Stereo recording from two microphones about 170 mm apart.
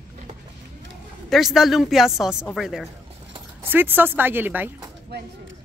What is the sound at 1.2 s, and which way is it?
Speech, centre (ahead or behind).